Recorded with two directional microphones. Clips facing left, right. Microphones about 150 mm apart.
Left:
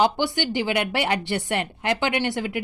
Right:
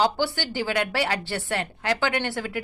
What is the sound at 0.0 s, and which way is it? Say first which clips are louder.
A woman's voice: left 2 dB; 15° left (ahead or behind).